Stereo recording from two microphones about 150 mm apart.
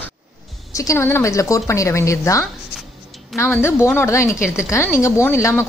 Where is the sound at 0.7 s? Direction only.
20° left (ahead or behind).